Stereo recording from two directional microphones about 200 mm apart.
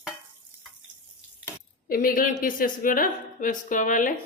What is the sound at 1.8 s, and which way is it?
A woman's voice, 45° left (ahead or behind).